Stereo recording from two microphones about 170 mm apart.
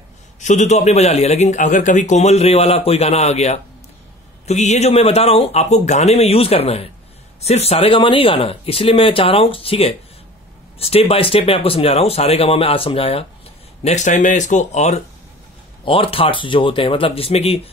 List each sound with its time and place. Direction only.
0.4 s a man's voice: 45° left (ahead or behind)
13.8 s speech: 45° left (ahead or behind)
15.8 s a man's voice: 30° left (ahead or behind)